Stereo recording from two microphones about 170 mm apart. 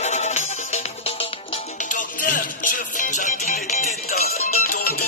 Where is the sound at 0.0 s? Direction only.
40° left (ahead or behind).